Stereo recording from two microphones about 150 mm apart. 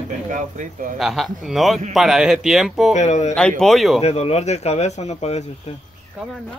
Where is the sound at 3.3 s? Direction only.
5° left (ahead or behind).